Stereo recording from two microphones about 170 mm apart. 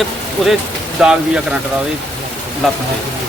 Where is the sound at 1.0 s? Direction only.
5° right (ahead or behind).